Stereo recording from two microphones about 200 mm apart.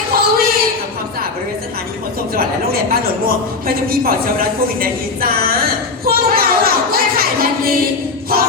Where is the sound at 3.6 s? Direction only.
45° right (ahead or behind).